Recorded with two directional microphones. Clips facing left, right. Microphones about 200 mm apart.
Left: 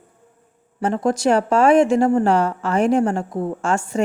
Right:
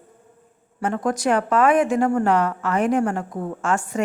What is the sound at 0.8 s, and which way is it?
Speech, 30° left (ahead or behind).